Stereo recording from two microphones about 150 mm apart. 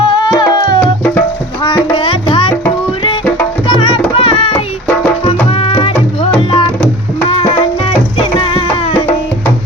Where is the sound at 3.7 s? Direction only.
30° left (ahead or behind).